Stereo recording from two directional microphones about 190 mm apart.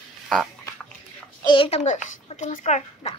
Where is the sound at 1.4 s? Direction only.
25° left (ahead or behind).